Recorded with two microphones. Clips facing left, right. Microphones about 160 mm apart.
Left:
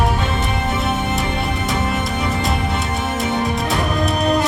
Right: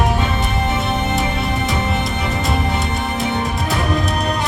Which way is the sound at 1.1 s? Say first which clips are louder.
Right 1 dB; centre (ahead or behind).